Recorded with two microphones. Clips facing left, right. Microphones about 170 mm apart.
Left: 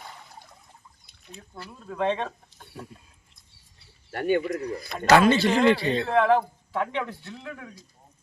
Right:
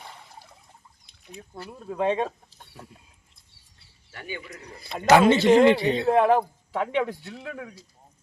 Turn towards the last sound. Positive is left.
turn(degrees=-15)  # may be behind; listen again after turning